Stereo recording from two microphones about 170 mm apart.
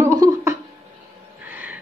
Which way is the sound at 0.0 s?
20° right (ahead or behind).